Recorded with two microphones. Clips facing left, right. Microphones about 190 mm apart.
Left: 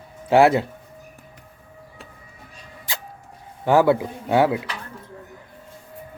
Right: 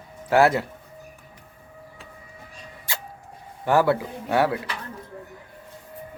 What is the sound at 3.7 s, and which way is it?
Speech, 15° left (ahead or behind).